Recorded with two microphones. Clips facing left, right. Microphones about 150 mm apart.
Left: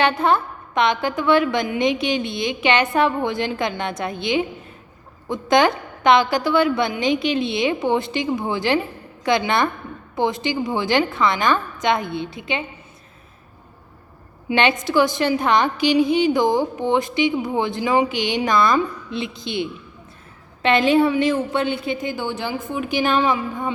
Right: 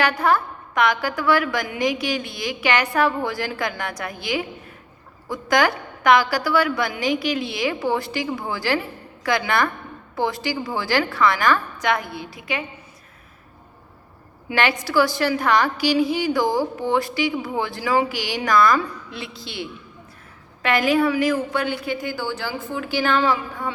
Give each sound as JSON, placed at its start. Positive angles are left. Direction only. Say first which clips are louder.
{"t": 0.0, "sound": "a woman's voice", "louder": "left 2 dB", "side_deg": 25}
{"t": 14.5, "sound": "a woman's voice", "louder": "left 2 dB", "side_deg": 20}